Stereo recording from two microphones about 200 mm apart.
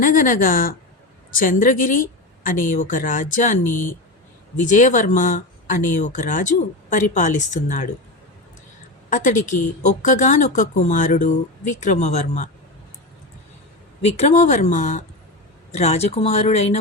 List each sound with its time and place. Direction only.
0.0 s a woman's voice: 45° left (ahead or behind)
9.0 s speech: 35° left (ahead or behind)
14.0 s speech: 35° left (ahead or behind)